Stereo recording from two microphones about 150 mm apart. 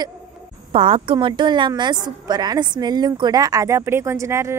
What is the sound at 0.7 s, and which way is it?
A woman's voice, 40° right (ahead or behind).